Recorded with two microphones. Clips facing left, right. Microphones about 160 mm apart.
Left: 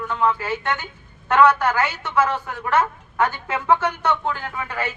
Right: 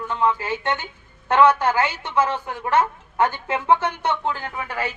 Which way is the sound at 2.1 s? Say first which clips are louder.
Left 1 dB; 20° right (ahead or behind).